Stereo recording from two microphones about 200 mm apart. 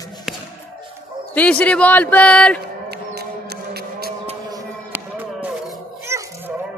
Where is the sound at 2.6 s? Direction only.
55° right (ahead or behind).